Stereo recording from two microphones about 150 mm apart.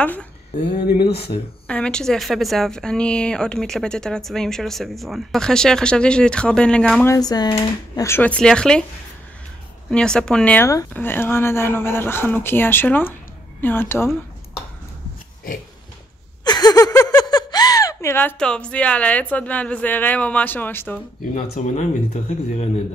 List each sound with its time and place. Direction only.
0.0 s speech: 10° left (ahead or behind)
1.7 s a woman's voice: 5° left (ahead or behind)
7.1 s speech: 25° left (ahead or behind); by 8.8 s 5° left (ahead or behind)
9.8 s a woman's voice: 5° left (ahead or behind)
16.4 s a sound: 25° left (ahead or behind); by 19.2 s 10° left (ahead or behind)
19.3 s speech: 10° left (ahead or behind)
21.4 s speech: 55° left (ahead or behind)